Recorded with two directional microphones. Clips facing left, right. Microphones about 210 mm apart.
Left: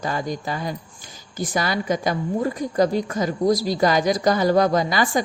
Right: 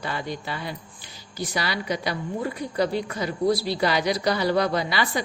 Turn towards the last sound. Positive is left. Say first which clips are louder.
# left 5 dB
turn(degrees=45)  # may be behind; listen again after turning